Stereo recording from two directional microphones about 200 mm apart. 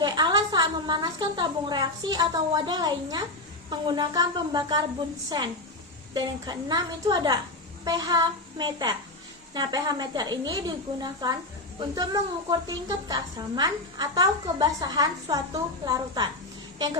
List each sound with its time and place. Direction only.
0.0 s a woman's voice: 20° right (ahead or behind)
6.1 s a woman's voice: 20° right (ahead or behind)